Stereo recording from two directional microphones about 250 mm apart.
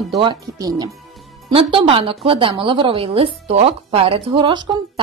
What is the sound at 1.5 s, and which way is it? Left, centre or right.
A woman's voice, right.